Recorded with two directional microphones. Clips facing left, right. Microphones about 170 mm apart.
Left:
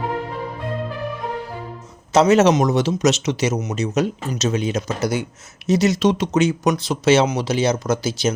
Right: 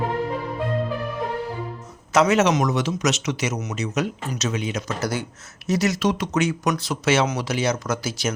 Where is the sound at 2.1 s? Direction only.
30° left (ahead or behind).